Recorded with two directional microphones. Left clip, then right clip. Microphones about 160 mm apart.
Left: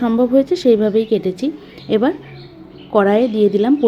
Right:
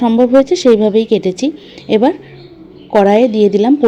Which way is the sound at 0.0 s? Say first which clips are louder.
Right 5 dB; 25° right (ahead or behind).